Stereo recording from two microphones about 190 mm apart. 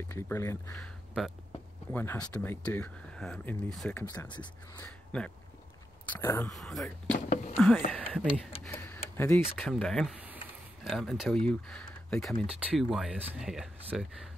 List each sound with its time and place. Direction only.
0.1 s speech: 15° left (ahead or behind)
0.7 s speech: centre (ahead or behind)
4.0 s speech: 15° left (ahead or behind)
4.7 s speech: 5° left (ahead or behind)
7.1 s speech: 40° left (ahead or behind)
7.5 s speech: 10° left (ahead or behind)
8.6 s a sound: 10° left (ahead or behind)
9.1 s speech: 10° left (ahead or behind)